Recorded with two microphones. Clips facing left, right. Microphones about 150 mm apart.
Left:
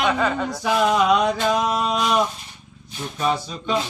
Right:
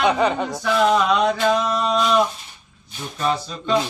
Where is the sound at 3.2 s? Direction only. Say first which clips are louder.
Even; 5° left (ahead or behind).